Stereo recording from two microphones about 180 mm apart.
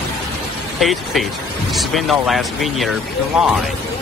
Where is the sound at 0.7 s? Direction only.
Centre (ahead or behind).